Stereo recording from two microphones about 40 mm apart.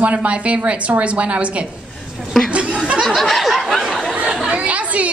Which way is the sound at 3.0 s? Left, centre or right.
Centre.